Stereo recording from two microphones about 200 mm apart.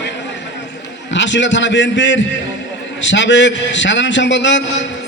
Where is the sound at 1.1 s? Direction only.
65° left (ahead or behind).